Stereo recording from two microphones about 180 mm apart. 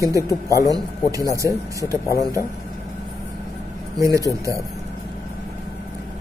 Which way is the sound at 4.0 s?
20° right (ahead or behind).